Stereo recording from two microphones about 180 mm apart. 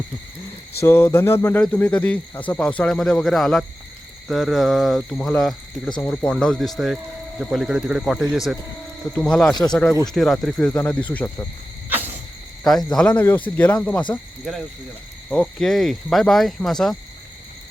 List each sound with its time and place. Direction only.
0.8 s speech: 15° left (ahead or behind)
9.5 s speech: 25° left (ahead or behind)
10.1 s speech: centre (ahead or behind)
12.6 s speech: 5° left (ahead or behind)